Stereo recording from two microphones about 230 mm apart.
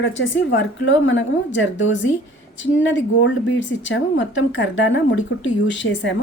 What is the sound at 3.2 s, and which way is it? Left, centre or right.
Speech, left.